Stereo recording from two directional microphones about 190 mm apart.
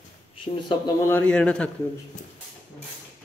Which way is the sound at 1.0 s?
10° left (ahead or behind).